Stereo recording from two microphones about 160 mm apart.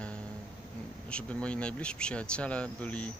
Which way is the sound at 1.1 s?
5° left (ahead or behind).